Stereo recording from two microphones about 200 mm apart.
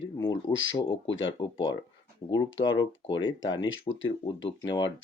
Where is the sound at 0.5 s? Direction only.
70° left (ahead or behind).